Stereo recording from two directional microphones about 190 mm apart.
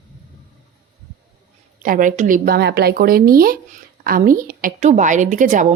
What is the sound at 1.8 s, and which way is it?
Speech, 45° right (ahead or behind).